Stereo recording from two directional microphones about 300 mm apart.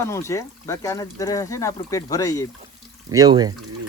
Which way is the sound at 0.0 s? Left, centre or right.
Centre.